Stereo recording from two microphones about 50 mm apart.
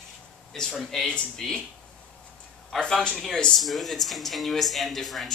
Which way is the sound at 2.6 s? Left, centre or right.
Centre.